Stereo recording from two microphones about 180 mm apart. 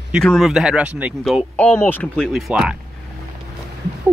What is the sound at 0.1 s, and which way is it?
Speech, centre (ahead or behind).